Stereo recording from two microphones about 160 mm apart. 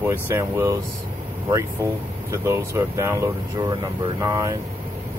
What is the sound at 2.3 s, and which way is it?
Speech, 15° right (ahead or behind).